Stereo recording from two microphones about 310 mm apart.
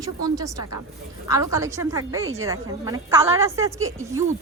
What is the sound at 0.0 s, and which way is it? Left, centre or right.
A woman's voice, centre.